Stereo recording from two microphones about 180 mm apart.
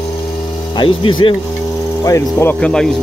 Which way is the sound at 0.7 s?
25° left (ahead or behind).